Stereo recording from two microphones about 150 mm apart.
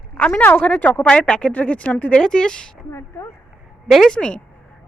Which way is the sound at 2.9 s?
20° left (ahead or behind).